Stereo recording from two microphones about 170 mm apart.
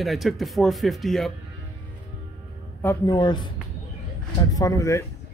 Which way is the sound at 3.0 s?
25° left (ahead or behind).